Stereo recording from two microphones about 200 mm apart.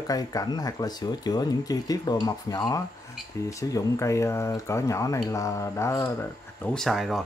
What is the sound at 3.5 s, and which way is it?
Speech, 15° left (ahead or behind).